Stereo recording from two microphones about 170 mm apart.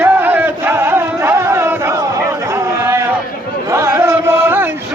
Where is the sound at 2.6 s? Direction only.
15° right (ahead or behind).